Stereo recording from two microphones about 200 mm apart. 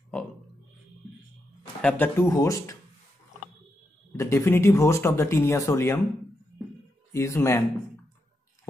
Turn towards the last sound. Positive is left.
turn(degrees=15)  # may be behind; listen again after turning